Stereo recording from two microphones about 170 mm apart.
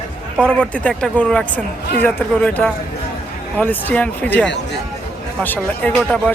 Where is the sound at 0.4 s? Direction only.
5° left (ahead or behind).